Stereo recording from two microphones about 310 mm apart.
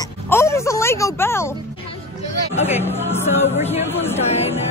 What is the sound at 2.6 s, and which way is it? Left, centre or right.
Music, centre.